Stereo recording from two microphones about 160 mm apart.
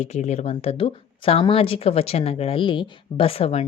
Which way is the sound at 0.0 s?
45° left (ahead or behind).